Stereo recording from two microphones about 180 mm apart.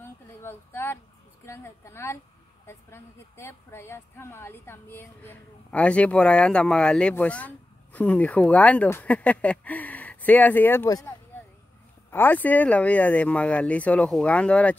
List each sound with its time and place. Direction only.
0.0 s a sound: 15° left (ahead or behind)
1.4 s a woman's voice: 15° left (ahead or behind)
12.1 s a woman's voice: 10° left (ahead or behind)